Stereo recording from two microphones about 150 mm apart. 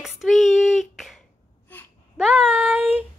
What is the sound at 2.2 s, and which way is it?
Speech, 10° right (ahead or behind).